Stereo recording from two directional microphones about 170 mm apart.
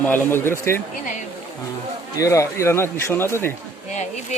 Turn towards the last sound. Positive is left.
turn(degrees=45)  # may be behind; listen again after turning